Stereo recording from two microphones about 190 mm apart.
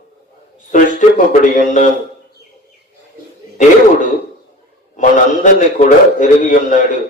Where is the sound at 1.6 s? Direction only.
40° left (ahead or behind).